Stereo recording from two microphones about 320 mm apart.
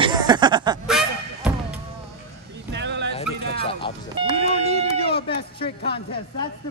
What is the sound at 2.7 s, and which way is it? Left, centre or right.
Bow-wow, right.